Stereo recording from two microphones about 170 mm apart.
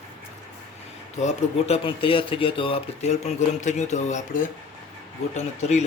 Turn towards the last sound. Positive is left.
turn(degrees=40)  # may be behind; listen again after turning